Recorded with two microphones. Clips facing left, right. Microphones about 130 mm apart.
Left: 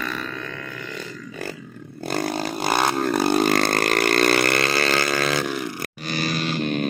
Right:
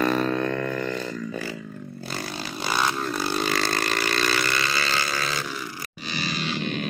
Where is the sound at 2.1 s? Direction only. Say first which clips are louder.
Left 9 dB; 50° left (ahead or behind).